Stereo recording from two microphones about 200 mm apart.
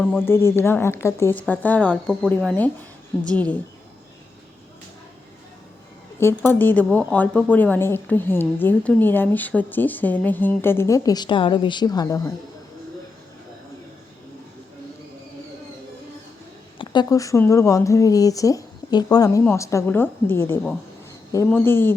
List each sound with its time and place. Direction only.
0.0 s a woman's voice: 10° left (ahead or behind)
6.1 s a woman's voice: 10° left (ahead or behind)
16.7 s a woman's voice: 20° left (ahead or behind)